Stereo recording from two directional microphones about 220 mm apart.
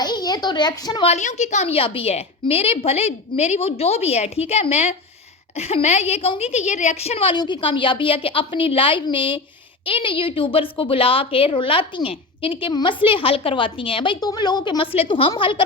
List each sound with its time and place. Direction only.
0.0 s a woman's voice: 20° left (ahead or behind)